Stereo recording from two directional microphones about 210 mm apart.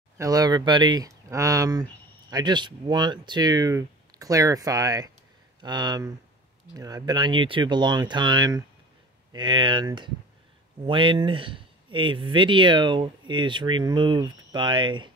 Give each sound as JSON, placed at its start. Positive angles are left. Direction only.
{"t": 0.2, "sound": "speech", "side_deg": -15}